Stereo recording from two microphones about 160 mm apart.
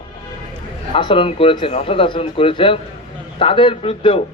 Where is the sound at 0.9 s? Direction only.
30° left (ahead or behind).